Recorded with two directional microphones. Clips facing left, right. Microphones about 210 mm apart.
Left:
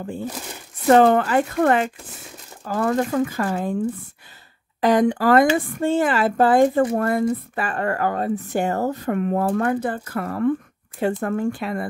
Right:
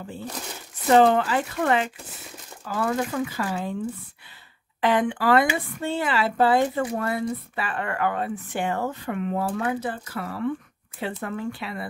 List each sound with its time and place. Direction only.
0.8 s speech: 50° left (ahead or behind)
4.8 s speech: 40° left (ahead or behind)